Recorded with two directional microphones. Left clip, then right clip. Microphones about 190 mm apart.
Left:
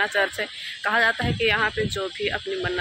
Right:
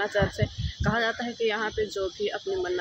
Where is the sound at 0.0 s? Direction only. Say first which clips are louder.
Left 4 dB; 15° right (ahead or behind).